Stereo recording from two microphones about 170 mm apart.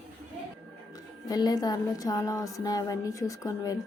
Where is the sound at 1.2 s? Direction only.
20° left (ahead or behind).